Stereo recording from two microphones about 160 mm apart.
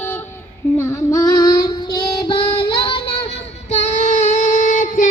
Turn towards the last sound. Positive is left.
turn(degrees=55)  # may be behind; listen again after turning